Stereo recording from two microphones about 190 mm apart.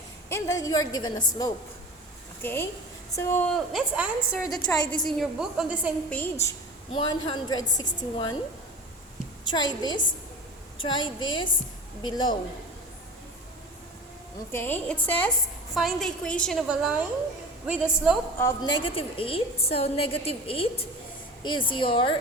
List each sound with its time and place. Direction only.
0.3 s a woman's voice: 15° left (ahead or behind); by 4.4 s 5° right (ahead or behind)
4.4 s a woman's voice: 20° left (ahead or behind)
5.0 s a woman's voice: centre (ahead or behind)
6.1 s a woman's voice: 10° left (ahead or behind)
6.9 s a woman's voice: 25° left (ahead or behind)
9.4 s a woman's voice: 25° left (ahead or behind)
14.5 s a woman's voice: 10° left (ahead or behind); by 18.2 s 5° right (ahead or behind)
18.3 s a woman's voice: 20° left (ahead or behind)